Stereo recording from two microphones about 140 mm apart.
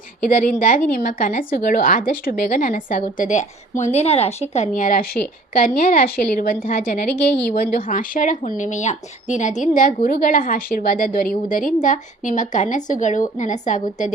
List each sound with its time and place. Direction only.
0.3 s speech: 70° left (ahead or behind)
0.9 s a woman's voice: 85° left; by 14.1 s 60° left (ahead or behind)